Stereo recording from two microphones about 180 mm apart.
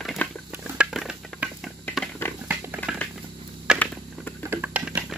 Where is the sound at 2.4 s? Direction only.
10° right (ahead or behind).